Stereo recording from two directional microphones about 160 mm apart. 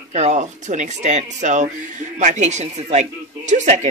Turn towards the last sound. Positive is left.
turn(degrees=-50)  # may be behind; listen again after turning